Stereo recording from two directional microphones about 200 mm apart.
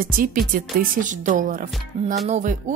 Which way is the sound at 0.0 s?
45° right (ahead or behind).